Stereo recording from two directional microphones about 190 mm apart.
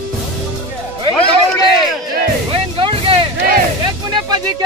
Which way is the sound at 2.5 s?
30° right (ahead or behind).